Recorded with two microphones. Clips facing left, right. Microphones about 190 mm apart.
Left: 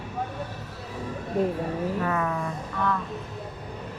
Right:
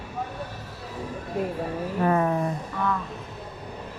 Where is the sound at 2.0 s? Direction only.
30° right (ahead or behind).